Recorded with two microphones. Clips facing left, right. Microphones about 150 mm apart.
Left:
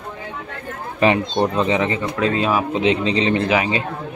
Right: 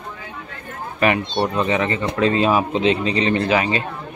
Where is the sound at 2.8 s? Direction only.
20° left (ahead or behind).